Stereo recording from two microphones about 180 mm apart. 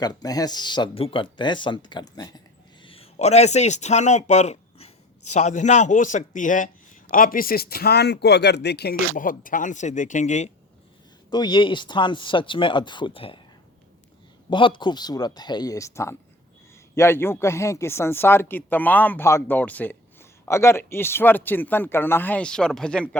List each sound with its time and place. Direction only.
0.0 s speech: 20° left (ahead or behind)
2.8 s a man's voice: 30° left (ahead or behind)
11.3 s speech: 25° left (ahead or behind)
14.5 s speech: 25° left (ahead or behind); by 23.0 s 5° left (ahead or behind)